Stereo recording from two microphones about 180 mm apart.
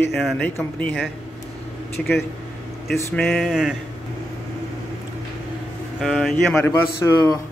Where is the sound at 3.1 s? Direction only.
Centre (ahead or behind).